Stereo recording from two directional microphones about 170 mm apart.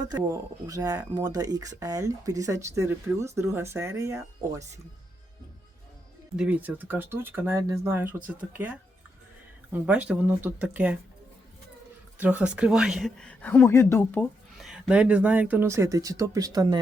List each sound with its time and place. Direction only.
0.1 s speech: 20° right (ahead or behind)
6.3 s speech: 5° right (ahead or behind)
12.1 s speech: 10° right (ahead or behind)